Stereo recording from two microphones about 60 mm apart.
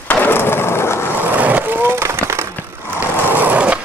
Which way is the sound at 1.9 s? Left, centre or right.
Right.